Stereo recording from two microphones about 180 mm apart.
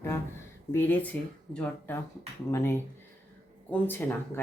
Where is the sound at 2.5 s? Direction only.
15° left (ahead or behind).